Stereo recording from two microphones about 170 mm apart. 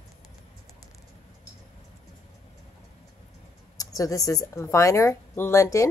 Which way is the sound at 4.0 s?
20° left (ahead or behind).